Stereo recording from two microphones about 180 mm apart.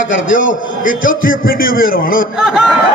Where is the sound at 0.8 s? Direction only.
50° left (ahead or behind).